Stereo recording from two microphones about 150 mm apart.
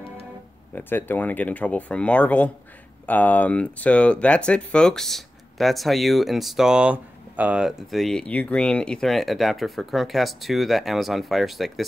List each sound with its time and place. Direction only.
0.7 s speech: 15° left (ahead or behind)